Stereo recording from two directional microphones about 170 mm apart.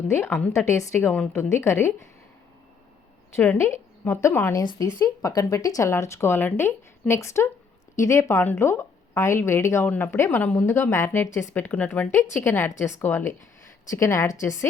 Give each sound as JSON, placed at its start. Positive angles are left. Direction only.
{"t": 0.1, "sound": "speech", "side_deg": 15}
{"t": 3.3, "sound": "speech", "side_deg": 15}